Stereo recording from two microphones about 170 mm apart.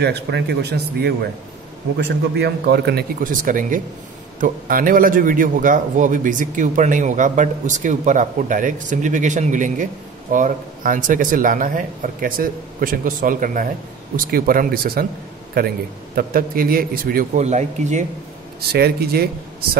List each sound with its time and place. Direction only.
0.0 s a man's voice: 75° right (ahead or behind); by 15.0 s 60° right (ahead or behind)
16.2 s a man's voice: 60° right (ahead or behind)
17.4 s a man's voice: 45° right (ahead or behind)
18.7 s speech: 70° right (ahead or behind)